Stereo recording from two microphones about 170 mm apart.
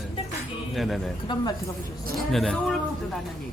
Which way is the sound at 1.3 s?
25° left (ahead or behind).